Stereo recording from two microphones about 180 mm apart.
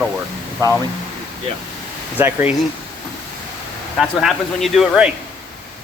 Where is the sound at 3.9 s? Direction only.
Centre (ahead or behind).